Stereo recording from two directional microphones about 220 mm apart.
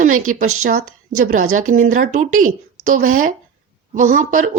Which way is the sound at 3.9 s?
35° right (ahead or behind).